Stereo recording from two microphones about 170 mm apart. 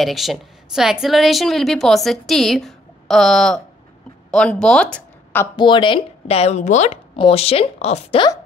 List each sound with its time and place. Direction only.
0.0 s a woman's voice: centre (ahead or behind)
5.6 s speech: 30° left (ahead or behind)